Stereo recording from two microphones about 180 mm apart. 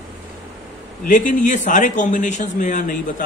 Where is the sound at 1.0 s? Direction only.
45° left (ahead or behind).